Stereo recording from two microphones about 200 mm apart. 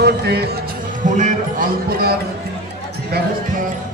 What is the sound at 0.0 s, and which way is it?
Speech, 55° right (ahead or behind).